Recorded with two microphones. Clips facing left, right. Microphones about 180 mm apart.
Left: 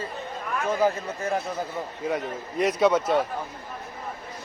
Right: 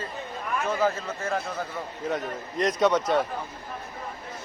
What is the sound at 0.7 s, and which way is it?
A man's voice, 15° left (ahead or behind).